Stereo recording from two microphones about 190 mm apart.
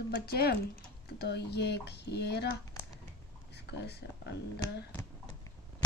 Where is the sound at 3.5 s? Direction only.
60° left (ahead or behind).